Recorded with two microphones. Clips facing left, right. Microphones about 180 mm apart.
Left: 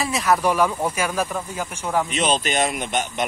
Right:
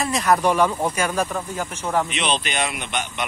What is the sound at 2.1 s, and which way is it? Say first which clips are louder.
Speech: left 3 dB; 45° left (ahead or behind).